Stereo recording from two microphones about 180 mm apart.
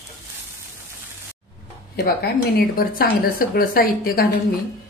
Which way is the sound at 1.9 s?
60° left (ahead or behind).